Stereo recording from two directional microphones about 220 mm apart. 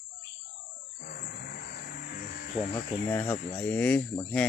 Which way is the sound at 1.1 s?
45° left (ahead or behind).